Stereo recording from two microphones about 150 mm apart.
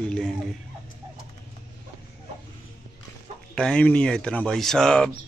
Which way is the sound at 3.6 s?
5° left (ahead or behind).